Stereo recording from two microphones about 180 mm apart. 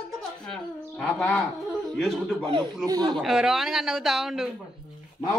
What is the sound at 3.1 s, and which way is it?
Speech, centre (ahead or behind).